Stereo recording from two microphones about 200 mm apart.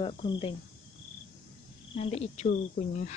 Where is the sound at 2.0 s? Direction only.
30° left (ahead or behind).